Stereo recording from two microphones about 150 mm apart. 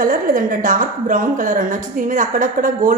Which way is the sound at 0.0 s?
65° right (ahead or behind).